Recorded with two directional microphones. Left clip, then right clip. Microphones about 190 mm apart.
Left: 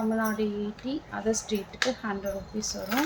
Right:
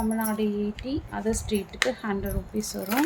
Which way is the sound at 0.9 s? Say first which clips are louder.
Left 2 dB; 25° right (ahead or behind).